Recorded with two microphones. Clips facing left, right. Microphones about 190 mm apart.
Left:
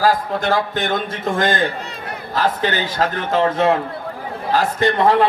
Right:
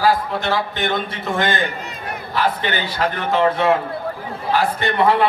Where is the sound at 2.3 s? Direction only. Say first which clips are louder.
Left 2 dB; 45° left (ahead or behind).